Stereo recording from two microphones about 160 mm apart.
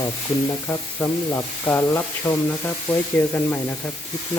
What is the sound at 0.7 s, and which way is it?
Speech, 20° left (ahead or behind).